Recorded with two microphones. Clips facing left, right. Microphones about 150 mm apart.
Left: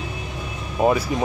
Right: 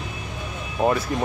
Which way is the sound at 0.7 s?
10° left (ahead or behind).